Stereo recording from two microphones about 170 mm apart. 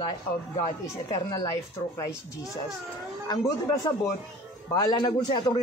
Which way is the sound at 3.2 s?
20° left (ahead or behind).